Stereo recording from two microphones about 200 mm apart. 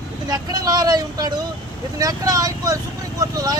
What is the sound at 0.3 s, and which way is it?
Speech, 20° right (ahead or behind).